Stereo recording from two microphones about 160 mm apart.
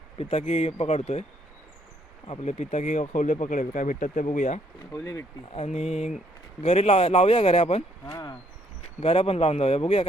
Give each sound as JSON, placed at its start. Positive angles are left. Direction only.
{"t": 0.2, "sound": "speech", "side_deg": 40}
{"t": 2.2, "sound": "speech", "side_deg": 40}
{"t": 4.9, "sound": "speech", "side_deg": 20}
{"t": 5.5, "sound": "speech", "side_deg": 45}
{"t": 8.0, "sound": "speech", "side_deg": 25}
{"t": 9.0, "sound": "speech", "side_deg": 40}